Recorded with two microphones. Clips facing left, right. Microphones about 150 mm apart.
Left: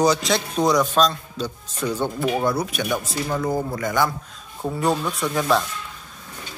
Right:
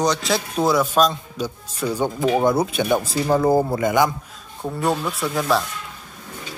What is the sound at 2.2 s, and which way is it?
Speech, 25° right (ahead or behind).